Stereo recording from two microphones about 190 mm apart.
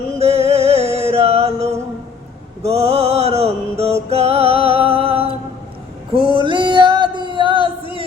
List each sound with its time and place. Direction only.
0.2 s music: 35° right (ahead or behind)
2.6 s mantra: 35° right (ahead or behind)
4.1 s music: 35° right (ahead or behind)
6.4 s music: 25° right (ahead or behind)